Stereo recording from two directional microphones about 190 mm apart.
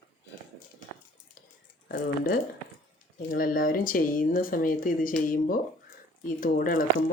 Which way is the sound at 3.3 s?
45° left (ahead or behind).